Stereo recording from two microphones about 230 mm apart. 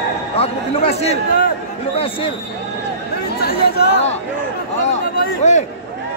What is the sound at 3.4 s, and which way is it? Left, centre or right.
Speech, left.